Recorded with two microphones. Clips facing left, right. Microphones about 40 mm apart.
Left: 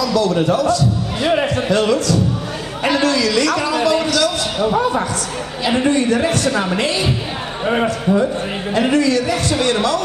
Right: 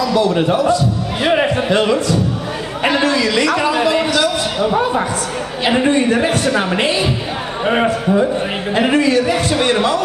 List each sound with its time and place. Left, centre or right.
0.0 s a man's voice: right
5.7 s a man's voice: right
7.6 s a man's voice: centre
8.7 s a man's voice: right